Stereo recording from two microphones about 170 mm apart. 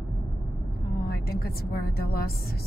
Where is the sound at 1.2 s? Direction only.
65° left (ahead or behind).